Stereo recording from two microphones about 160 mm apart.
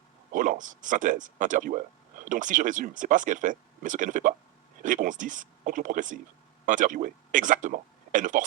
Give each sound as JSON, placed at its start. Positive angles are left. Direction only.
{"t": 0.3, "sound": "speech", "side_deg": -55}